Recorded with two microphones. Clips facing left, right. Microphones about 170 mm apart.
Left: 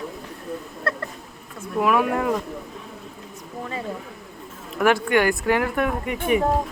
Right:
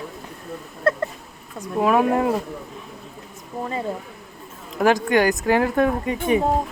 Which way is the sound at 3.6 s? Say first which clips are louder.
Right 4 dB; 30° right (ahead or behind).